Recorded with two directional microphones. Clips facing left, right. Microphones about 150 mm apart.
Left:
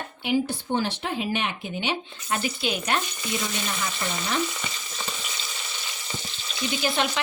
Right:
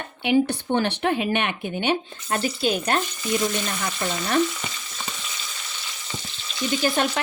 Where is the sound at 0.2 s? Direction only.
65° right (ahead or behind); by 3.0 s 40° right (ahead or behind).